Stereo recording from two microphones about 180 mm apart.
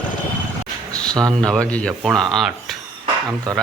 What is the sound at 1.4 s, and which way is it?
Speech, 5° left (ahead or behind).